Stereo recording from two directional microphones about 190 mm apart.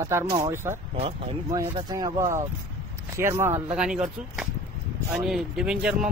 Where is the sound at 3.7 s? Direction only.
5° right (ahead or behind).